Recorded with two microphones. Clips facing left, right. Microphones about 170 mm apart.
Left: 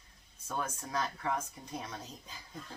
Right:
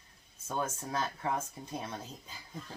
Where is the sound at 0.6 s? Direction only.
25° right (ahead or behind).